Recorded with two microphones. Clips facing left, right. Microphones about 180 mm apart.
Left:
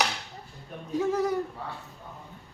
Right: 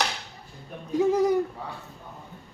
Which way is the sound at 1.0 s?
15° right (ahead or behind).